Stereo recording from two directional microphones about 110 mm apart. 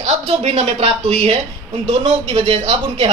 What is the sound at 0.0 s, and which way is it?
A woman's voice, 70° right (ahead or behind).